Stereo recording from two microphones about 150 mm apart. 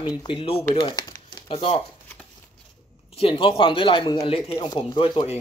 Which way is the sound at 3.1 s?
35° left (ahead or behind).